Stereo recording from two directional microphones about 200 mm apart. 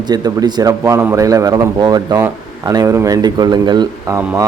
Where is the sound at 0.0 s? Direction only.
20° right (ahead or behind).